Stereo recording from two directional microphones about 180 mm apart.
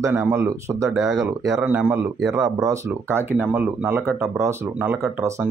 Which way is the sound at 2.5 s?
15° right (ahead or behind).